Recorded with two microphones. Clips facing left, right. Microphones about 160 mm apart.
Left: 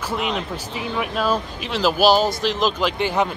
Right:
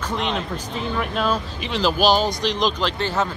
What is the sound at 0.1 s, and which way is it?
Speech, 5° left (ahead or behind).